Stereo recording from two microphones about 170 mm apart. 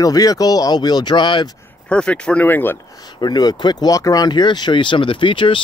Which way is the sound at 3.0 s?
25° left (ahead or behind).